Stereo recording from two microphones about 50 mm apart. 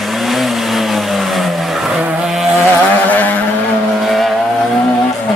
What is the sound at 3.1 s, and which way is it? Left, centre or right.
Vehicle, left.